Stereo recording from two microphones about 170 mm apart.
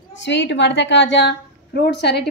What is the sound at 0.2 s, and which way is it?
A woman's voice, 90° left.